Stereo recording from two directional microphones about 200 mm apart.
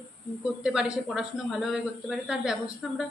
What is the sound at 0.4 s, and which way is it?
Speech, 5° right (ahead or behind).